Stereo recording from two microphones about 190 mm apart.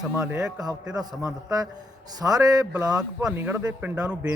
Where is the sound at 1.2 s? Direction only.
20° right (ahead or behind).